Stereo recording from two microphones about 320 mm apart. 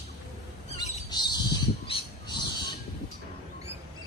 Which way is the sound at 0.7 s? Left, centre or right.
Centre.